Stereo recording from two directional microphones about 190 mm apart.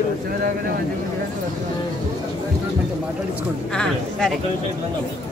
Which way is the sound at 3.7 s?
5° left (ahead or behind).